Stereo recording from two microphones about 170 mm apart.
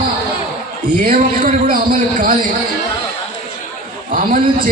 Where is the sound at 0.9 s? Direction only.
55° right (ahead or behind).